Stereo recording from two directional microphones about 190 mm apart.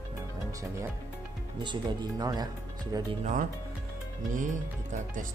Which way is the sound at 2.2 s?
20° right (ahead or behind).